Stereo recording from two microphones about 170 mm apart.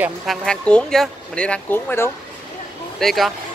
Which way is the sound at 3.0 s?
Centre (ahead or behind).